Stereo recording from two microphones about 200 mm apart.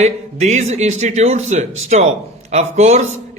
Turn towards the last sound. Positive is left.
turn(degrees=-35)  # may be behind; listen again after turning